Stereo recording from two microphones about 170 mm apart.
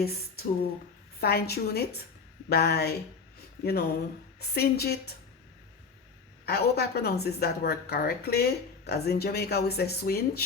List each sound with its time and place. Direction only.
1.2 s a woman's voice: 70° left (ahead or behind)
6.4 s a woman's voice: 70° left (ahead or behind)